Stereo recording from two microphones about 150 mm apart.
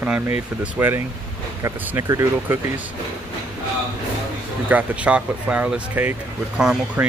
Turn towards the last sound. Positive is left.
turn(degrees=-5)  # may be behind; listen again after turning